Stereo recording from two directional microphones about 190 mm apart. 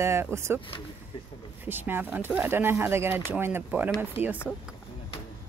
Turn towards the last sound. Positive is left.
turn(degrees=-10)  # may be behind; listen again after turning